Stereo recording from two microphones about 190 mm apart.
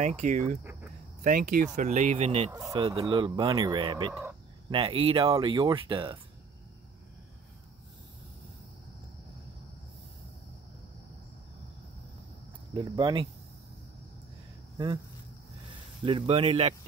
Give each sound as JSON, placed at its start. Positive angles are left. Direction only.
{"t": 0.0, "sound": "speech", "side_deg": -40}
{"t": 2.5, "sound": "speech", "side_deg": -20}
{"t": 4.1, "sound": "speech", "side_deg": -5}
{"t": 4.6, "sound": "speech", "side_deg": -30}
{"t": 12.7, "sound": "speech", "side_deg": -25}
{"t": 16.1, "sound": "speech", "side_deg": -30}